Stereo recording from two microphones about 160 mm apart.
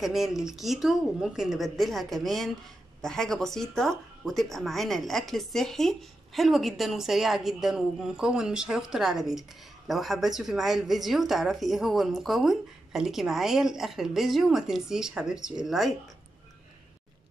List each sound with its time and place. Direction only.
0.0 s speech: centre (ahead or behind)